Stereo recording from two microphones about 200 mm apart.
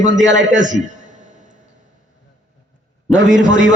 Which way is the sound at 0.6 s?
35° right (ahead or behind).